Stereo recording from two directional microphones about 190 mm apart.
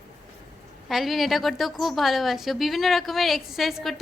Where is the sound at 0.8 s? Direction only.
Centre (ahead or behind).